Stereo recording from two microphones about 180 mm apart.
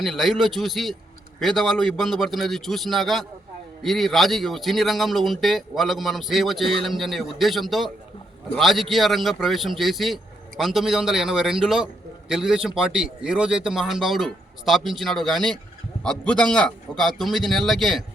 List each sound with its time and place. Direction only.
0.0 s speech: centre (ahead or behind)